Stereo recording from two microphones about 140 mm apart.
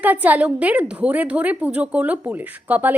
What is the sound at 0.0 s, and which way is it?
A woman's voice, 10° right (ahead or behind).